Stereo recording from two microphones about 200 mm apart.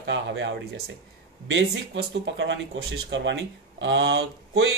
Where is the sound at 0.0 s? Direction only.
65° right (ahead or behind).